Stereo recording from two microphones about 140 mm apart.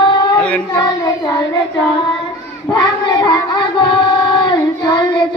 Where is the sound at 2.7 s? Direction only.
35° left (ahead or behind).